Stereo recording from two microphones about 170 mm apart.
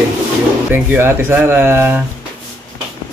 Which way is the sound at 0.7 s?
15° right (ahead or behind).